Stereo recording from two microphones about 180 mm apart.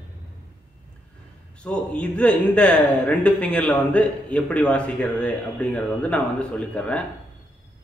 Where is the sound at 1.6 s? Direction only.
5° left (ahead or behind).